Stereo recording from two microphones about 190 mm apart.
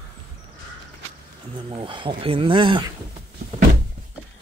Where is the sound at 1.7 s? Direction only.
25° right (ahead or behind).